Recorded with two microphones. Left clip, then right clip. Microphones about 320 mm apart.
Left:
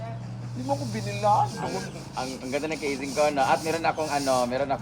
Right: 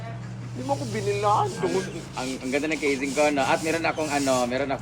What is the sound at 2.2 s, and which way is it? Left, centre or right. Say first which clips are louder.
Speech: right 2 dB; left.